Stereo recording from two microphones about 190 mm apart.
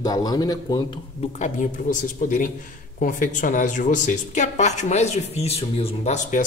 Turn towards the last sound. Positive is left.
turn(degrees=35)  # may be behind; listen again after turning